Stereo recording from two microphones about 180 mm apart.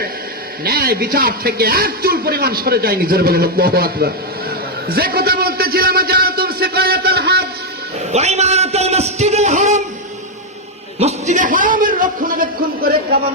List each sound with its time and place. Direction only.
0.6 s a man's voice: 55° right (ahead or behind)
8.1 s a sound: 35° right (ahead or behind)
11.0 s a man's voice: 40° right (ahead or behind)